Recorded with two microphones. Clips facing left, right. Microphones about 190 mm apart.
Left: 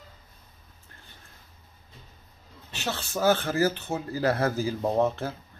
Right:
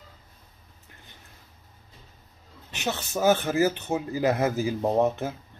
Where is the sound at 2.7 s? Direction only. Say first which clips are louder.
Right 2 dB; 20° right (ahead or behind).